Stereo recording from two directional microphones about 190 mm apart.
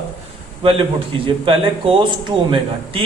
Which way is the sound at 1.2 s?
30° right (ahead or behind).